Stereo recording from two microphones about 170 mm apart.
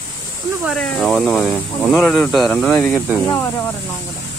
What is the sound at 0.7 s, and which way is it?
Speech, centre (ahead or behind).